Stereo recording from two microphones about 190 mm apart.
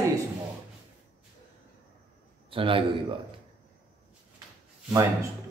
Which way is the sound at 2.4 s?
30° right (ahead or behind).